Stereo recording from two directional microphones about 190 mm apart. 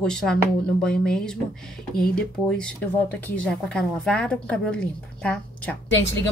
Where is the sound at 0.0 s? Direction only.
5° left (ahead or behind).